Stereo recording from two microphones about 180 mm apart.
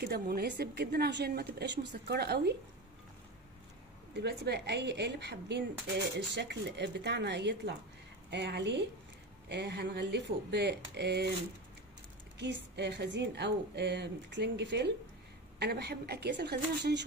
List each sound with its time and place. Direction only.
0.0 s a woman's voice: 60° right (ahead or behind)
4.1 s a woman's voice: 70° right (ahead or behind)
12.4 s a woman's voice: 75° right (ahead or behind)